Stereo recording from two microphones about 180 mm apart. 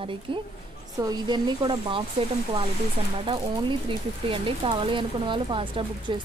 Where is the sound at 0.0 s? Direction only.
30° right (ahead or behind).